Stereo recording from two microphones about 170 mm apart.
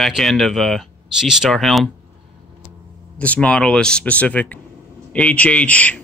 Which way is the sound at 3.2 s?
10° left (ahead or behind).